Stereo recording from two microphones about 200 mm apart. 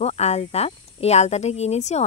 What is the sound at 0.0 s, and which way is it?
Speech, 30° left (ahead or behind).